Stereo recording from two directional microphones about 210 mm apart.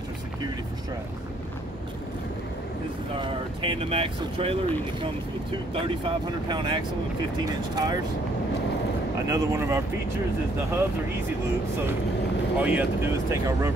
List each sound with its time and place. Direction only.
3.2 s speech: 25° right (ahead or behind)
5.8 s speech: 25° right (ahead or behind)
9.3 s speech: 15° right (ahead or behind)
12.5 s speech: 5° right (ahead or behind)